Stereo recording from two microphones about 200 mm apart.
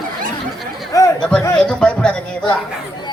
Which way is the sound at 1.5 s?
5° left (ahead or behind).